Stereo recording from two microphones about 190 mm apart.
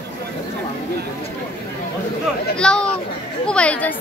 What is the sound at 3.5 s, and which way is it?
Speech, 5° left (ahead or behind).